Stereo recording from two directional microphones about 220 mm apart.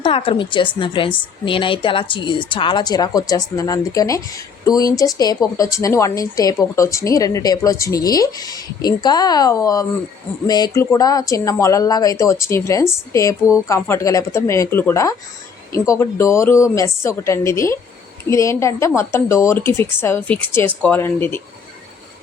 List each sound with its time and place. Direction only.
0.0 s a woman's voice: 25° left (ahead or behind)